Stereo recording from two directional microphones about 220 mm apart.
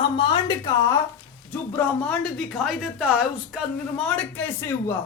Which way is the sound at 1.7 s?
5° left (ahead or behind).